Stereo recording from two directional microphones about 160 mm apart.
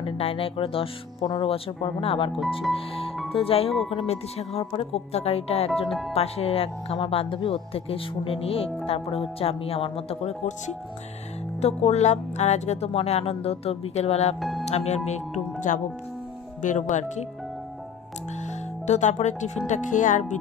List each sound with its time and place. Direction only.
0.0 s speech: 35° left (ahead or behind)
2.7 s music: 35° left (ahead or behind)
3.3 s speech: 35° left (ahead or behind)
5.9 s speech: centre (ahead or behind)
6.1 s speech: 40° left (ahead or behind)
11.6 s speech: 45° left (ahead or behind)
18.4 s speech: 45° left (ahead or behind)